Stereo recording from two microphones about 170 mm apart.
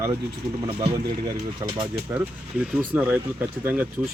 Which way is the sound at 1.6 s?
15° right (ahead or behind).